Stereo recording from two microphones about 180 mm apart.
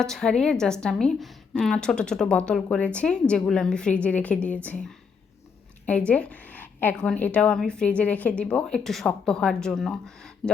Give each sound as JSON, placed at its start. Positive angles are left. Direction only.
{"t": 0.0, "sound": "a woman's voice", "side_deg": 5}
{"t": 6.1, "sound": "a woman's voice", "side_deg": 5}